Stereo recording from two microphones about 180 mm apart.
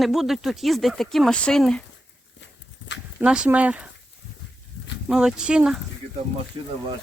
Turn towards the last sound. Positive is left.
turn(degrees=-25)  # may be behind; listen again after turning